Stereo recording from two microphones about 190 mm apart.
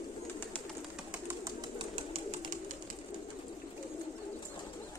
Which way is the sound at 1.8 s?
30° right (ahead or behind).